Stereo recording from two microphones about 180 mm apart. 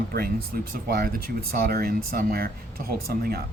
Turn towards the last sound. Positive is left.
turn(degrees=-60)  # may be behind; listen again after turning